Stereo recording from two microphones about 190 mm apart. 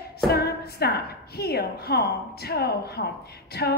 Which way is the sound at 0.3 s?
55° left (ahead or behind).